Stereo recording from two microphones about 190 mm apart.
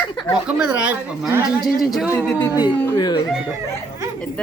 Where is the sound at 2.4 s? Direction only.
20° left (ahead or behind).